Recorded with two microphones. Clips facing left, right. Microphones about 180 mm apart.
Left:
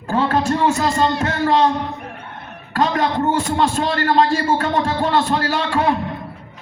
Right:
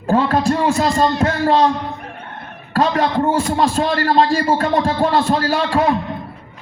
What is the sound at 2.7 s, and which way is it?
Music, 35° right (ahead or behind).